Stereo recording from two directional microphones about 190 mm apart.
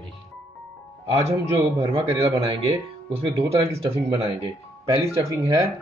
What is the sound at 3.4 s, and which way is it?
Speech, 30° right (ahead or behind).